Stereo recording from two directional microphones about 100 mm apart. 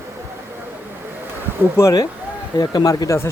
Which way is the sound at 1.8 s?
35° left (ahead or behind).